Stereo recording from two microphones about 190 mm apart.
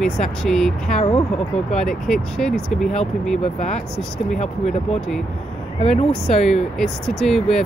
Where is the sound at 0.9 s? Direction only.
35° left (ahead or behind).